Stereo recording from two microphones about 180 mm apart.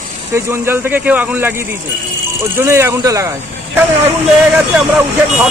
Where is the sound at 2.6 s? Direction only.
15° right (ahead or behind).